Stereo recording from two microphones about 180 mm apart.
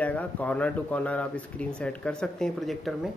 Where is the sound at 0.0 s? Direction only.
10° left (ahead or behind).